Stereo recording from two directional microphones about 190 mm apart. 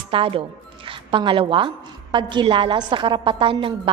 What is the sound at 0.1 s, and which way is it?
A woman's voice, 30° right (ahead or behind).